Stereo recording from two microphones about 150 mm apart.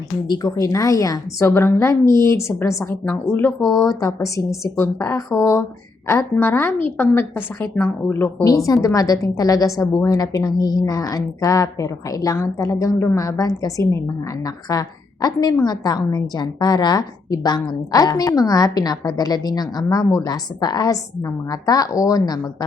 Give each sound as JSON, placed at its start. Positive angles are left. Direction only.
{"t": 0.3, "sound": "a woman's voice", "side_deg": 25}